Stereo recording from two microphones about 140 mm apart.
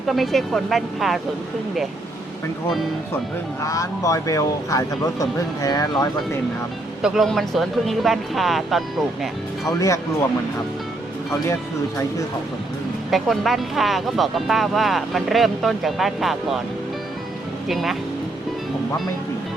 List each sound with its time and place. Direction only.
0.1 s speech: centre (ahead or behind)
3.6 s speech: 25° left (ahead or behind)
7.0 s speech: centre (ahead or behind)
9.6 s speech: 20° left (ahead or behind)
13.1 s speech: centre (ahead or behind)
17.7 s speech: centre (ahead or behind)